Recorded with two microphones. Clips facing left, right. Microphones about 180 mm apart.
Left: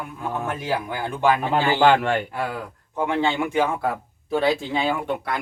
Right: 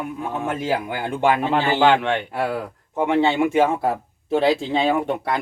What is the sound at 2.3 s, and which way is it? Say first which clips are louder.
A man's voice: right 4 dB; 25° right (ahead or behind).